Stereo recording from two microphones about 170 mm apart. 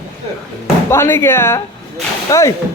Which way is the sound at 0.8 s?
15° left (ahead or behind).